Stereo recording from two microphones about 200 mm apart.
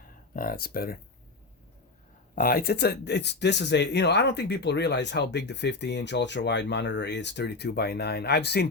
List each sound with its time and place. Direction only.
0.3 s speech: 45° left (ahead or behind)
2.3 s speech: 45° left (ahead or behind)